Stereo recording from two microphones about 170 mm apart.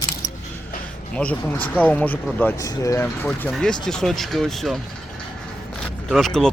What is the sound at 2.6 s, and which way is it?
Speech, 20° left (ahead or behind).